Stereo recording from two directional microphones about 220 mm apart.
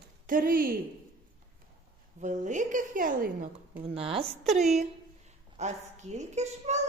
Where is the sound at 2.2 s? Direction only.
35° right (ahead or behind).